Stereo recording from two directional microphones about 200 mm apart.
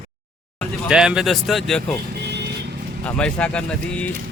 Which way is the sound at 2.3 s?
55° right (ahead or behind).